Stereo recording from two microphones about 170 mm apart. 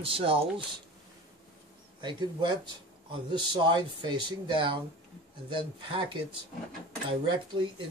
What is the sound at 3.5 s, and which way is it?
Speech, 25° right (ahead or behind).